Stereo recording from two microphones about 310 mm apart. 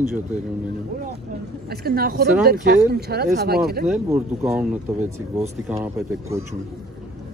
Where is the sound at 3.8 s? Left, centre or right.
Centre.